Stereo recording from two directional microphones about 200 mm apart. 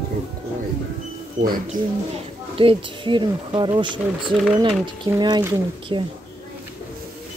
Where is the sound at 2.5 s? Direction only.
25° right (ahead or behind).